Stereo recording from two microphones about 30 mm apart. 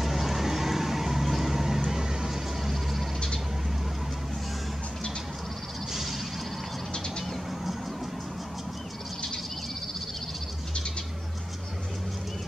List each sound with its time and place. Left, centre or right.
0.0 s vehicle: centre
1.9 s a sound: centre
2.6 s vehicle: centre